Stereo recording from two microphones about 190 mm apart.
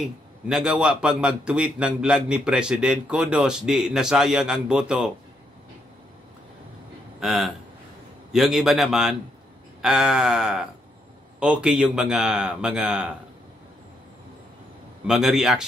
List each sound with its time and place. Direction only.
0.0 s a man's voice: 5° right (ahead or behind)
7.2 s a man's voice: centre (ahead or behind)
15.0 s a man's voice: centre (ahead or behind)